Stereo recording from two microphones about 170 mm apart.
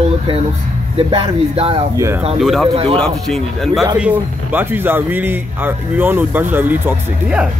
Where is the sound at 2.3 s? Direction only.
Centre (ahead or behind).